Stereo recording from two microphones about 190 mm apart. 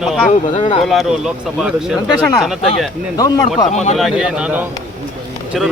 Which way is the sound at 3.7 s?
35° left (ahead or behind).